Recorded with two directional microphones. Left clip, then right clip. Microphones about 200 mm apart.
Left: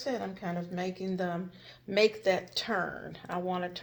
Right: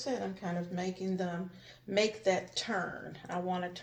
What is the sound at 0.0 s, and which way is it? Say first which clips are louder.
Speech: left 2 dB; 50° left (ahead or behind).